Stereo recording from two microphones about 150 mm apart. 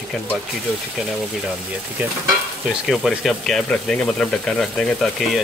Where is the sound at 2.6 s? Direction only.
Centre (ahead or behind).